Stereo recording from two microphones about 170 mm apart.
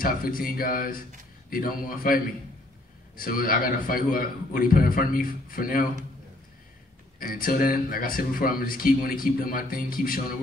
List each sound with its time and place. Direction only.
0.0 s speech: 55° left (ahead or behind)
7.2 s speech: 55° left (ahead or behind)